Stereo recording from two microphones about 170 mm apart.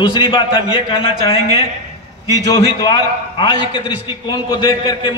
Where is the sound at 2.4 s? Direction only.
25° left (ahead or behind).